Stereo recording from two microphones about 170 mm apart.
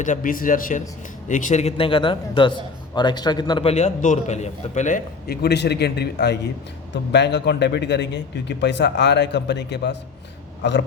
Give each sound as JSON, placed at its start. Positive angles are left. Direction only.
{"t": 0.0, "sound": "a man's voice", "side_deg": 50}
{"t": 5.3, "sound": "a man's voice", "side_deg": 75}
{"t": 6.9, "sound": "a man's voice", "side_deg": 90}